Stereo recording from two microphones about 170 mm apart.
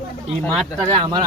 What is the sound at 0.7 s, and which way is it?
Speech, 20° right (ahead or behind).